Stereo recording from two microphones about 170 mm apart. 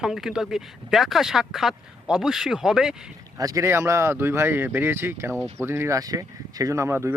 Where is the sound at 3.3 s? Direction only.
20° right (ahead or behind).